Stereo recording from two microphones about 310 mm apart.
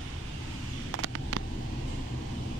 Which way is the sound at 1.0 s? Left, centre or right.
Right.